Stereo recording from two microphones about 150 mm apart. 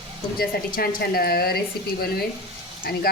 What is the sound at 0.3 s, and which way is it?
A woman's voice, 80° left.